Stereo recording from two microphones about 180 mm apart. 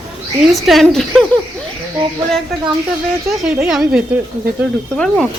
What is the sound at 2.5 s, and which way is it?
Speech, centre (ahead or behind).